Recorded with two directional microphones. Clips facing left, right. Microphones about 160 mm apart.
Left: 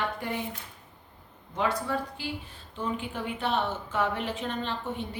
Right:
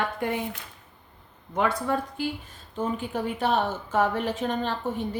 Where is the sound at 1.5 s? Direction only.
55° right (ahead or behind).